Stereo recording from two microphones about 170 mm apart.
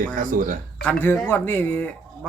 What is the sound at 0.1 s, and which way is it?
Speech, 50° right (ahead or behind).